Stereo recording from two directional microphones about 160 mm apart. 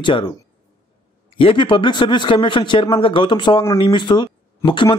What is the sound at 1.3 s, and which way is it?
A man's voice, 35° left (ahead or behind).